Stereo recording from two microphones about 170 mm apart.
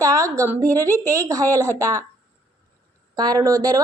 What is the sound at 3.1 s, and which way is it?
Speech, 25° right (ahead or behind).